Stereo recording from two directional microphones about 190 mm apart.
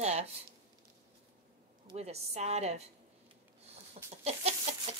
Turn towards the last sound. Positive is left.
turn(degrees=-35)  # may be behind; listen again after turning